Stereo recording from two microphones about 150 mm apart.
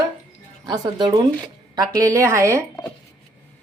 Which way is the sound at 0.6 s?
30° right (ahead or behind).